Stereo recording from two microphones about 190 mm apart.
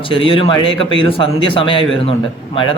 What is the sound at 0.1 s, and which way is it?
Speech, 25° left (ahead or behind).